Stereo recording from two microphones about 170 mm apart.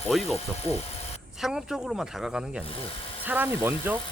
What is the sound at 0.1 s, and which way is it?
Speech, centre (ahead or behind).